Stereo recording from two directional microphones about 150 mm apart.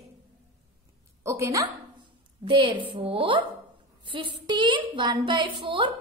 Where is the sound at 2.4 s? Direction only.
35° right (ahead or behind).